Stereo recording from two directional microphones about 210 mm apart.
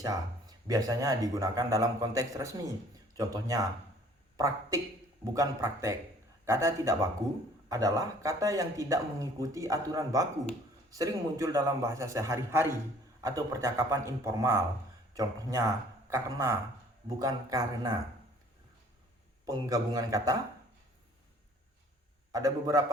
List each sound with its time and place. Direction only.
0.0 s speech: 15° right (ahead or behind)
19.5 s speech: 20° right (ahead or behind)
22.3 s speech: 15° right (ahead or behind)